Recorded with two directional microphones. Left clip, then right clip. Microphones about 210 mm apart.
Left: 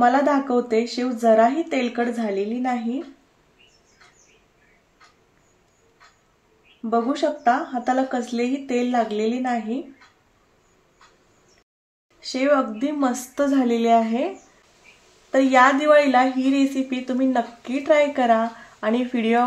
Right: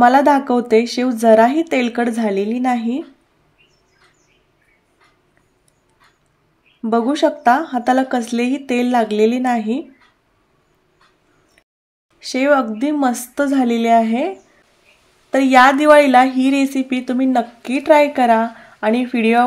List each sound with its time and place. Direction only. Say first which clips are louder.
0.0 s speech: right 7 dB; 35° right (ahead or behind)
6.8 s speech: right 6 dB; 35° right (ahead or behind)
12.2 s a woman's voice: right 5 dB; 30° right (ahead or behind)
15.3 s a woman's voice: right 5 dB; 25° right (ahead or behind)